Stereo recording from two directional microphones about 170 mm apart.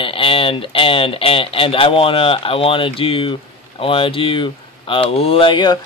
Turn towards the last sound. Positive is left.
turn(degrees=25)  # may be behind; listen again after turning